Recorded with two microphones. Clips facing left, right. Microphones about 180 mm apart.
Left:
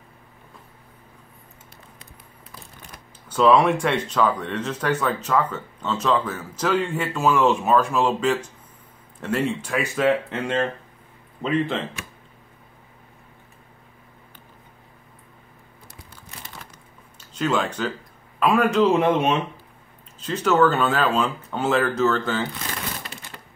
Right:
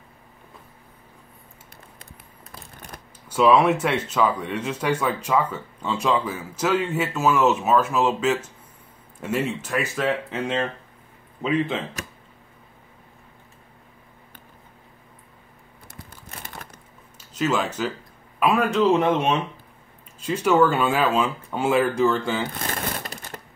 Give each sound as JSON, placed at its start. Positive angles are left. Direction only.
{"t": 3.3, "sound": "speech", "side_deg": -10}
{"t": 15.9, "sound": "a sound", "side_deg": -50}
{"t": 17.3, "sound": "speech", "side_deg": -5}
{"t": 20.2, "sound": "speech", "side_deg": -10}
{"t": 22.5, "sound": "crumpling", "side_deg": -50}